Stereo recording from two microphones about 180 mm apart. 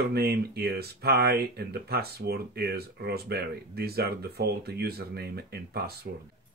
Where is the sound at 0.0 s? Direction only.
60° right (ahead or behind).